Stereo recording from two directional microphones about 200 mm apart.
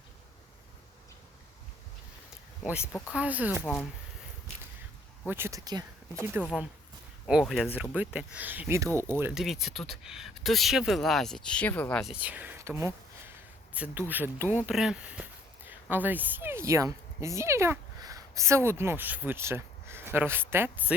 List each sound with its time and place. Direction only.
3.1 s speech: 5° right (ahead or behind)
3.6 s speech: 5° left (ahead or behind)
5.2 s speech: 10° right (ahead or behind)
6.4 s speech: 5° right (ahead or behind)
12.1 s speech: 5° right (ahead or behind)